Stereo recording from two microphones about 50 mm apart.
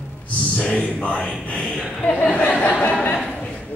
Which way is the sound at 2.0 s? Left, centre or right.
Left.